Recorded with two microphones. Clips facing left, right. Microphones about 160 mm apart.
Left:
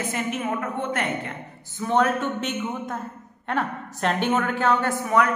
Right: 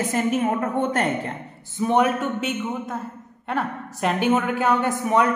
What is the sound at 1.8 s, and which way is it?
A woman's voice, 15° right (ahead or behind).